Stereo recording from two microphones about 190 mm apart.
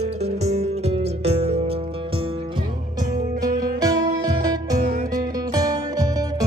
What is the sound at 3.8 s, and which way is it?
Music, 20° right (ahead or behind).